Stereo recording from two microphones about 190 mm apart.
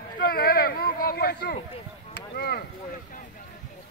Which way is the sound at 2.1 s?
55° left (ahead or behind).